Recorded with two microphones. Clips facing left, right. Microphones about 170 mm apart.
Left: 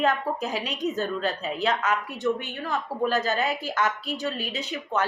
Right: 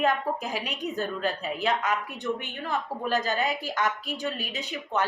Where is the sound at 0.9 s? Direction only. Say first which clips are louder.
Left 2 dB; 15° right (ahead or behind).